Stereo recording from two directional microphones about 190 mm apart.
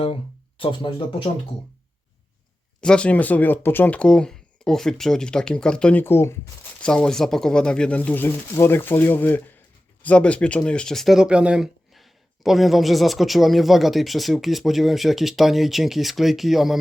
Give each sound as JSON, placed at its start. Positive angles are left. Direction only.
{"t": 0.0, "sound": "speech", "side_deg": 30}
{"t": 2.8, "sound": "speech", "side_deg": 5}